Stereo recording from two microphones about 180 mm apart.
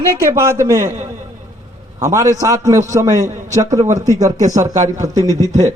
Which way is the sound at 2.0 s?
15° right (ahead or behind).